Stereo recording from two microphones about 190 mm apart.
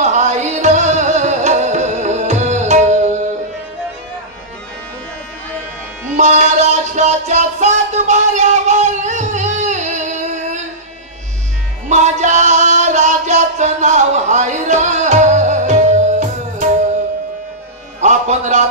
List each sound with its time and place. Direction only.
0.0 s music: 40° right (ahead or behind)
6.1 s music: 40° right (ahead or behind)
11.9 s music: 40° right (ahead or behind)
18.0 s music: 40° right (ahead or behind)